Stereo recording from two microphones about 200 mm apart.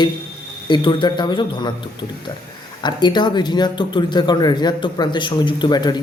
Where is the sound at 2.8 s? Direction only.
20° left (ahead or behind).